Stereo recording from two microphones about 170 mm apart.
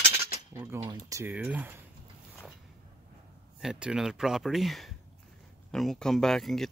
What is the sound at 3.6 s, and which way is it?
Speech, 5° right (ahead or behind).